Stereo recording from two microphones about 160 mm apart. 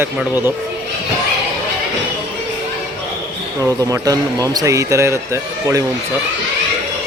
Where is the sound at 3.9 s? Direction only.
20° right (ahead or behind).